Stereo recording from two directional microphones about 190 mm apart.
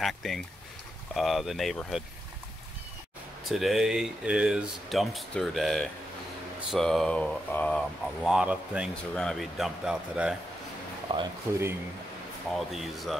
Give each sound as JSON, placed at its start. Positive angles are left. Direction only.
{"t": 0.0, "sound": "speech", "side_deg": 0}
{"t": 3.4, "sound": "speech", "side_deg": 0}
{"t": 11.1, "sound": "speech", "side_deg": -25}
{"t": 12.4, "sound": "speech", "side_deg": 0}